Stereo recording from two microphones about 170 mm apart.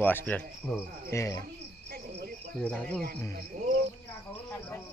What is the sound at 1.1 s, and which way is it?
Cricket, 20° left (ahead or behind).